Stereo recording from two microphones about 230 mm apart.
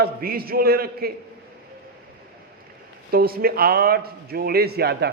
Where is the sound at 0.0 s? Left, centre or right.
Right.